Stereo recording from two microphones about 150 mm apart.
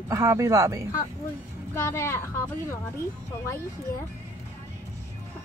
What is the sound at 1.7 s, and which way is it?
Speech, 20° left (ahead or behind).